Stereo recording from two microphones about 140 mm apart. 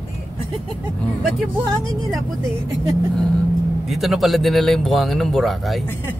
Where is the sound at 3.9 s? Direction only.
Centre (ahead or behind).